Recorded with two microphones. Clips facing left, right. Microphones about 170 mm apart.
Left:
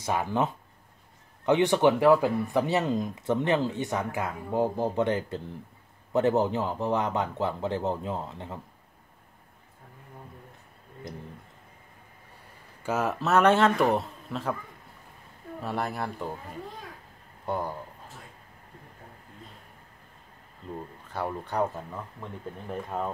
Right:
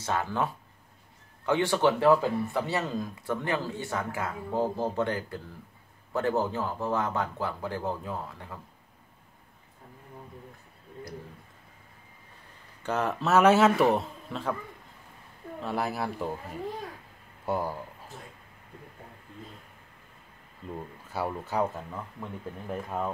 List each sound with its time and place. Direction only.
0.0 s speech: 15° left (ahead or behind)
12.8 s a man's voice: 5° left (ahead or behind)
15.6 s a man's voice: centre (ahead or behind)
17.5 s speech: 5° right (ahead or behind)
21.1 s a man's voice: 5° right (ahead or behind)